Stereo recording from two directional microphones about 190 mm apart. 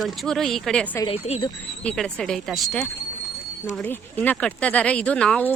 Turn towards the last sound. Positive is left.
turn(degrees=5)  # may be behind; listen again after turning